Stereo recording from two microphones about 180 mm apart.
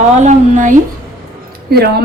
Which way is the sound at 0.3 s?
45° right (ahead or behind).